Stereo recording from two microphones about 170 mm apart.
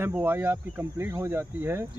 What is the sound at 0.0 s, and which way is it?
Speech, 15° right (ahead or behind).